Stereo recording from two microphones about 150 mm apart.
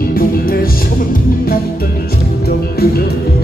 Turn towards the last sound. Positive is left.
turn(degrees=90)